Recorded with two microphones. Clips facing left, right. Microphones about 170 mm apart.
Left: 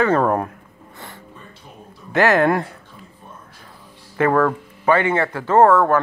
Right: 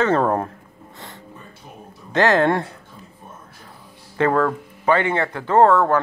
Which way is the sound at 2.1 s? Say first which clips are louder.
Left 1 dB; 20° right (ahead or behind).